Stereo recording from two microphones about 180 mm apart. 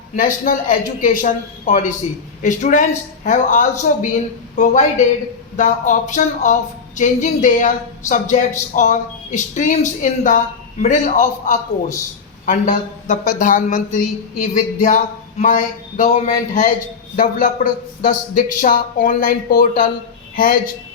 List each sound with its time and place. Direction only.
0.2 s speech: 45° left (ahead or behind)